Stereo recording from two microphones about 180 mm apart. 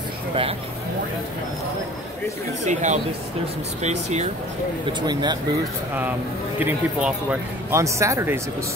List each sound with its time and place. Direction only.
2.6 s speech: 40° right (ahead or behind)
4.8 s speech: 25° right (ahead or behind)
6.6 s speech: 10° right (ahead or behind)